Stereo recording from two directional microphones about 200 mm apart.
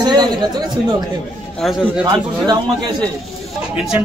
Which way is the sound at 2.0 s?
20° right (ahead or behind).